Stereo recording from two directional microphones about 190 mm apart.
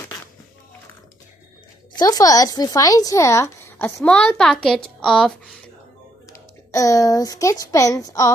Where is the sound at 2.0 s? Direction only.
20° left (ahead or behind); by 5.5 s centre (ahead or behind).